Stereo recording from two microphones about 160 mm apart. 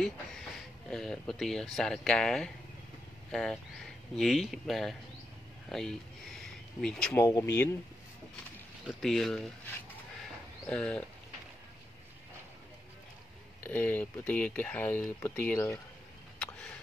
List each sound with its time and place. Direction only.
0.8 s speech: 5° left (ahead or behind)
5.7 s a sound: 5° left (ahead or behind)
7.2 s speech: 20° left (ahead or behind)
8.8 s speech: centre (ahead or behind)
10.7 s speech: 5° left (ahead or behind)
13.6 s speech: 10° left (ahead or behind)